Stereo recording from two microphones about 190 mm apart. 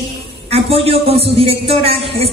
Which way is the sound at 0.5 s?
30° right (ahead or behind).